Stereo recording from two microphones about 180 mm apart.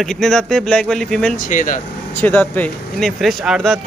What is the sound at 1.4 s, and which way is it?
Speech, 45° left (ahead or behind).